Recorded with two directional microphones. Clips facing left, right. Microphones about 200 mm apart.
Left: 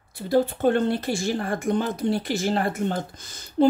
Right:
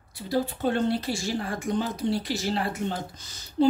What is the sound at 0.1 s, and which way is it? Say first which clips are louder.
Speech: left 6 dB; 50° left (ahead or behind).